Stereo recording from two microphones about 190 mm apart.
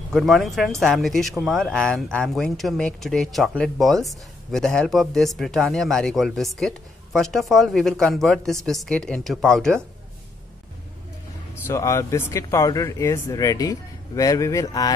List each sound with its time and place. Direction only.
0.1 s speech: centre (ahead or behind)
11.6 s speech: 15° left (ahead or behind)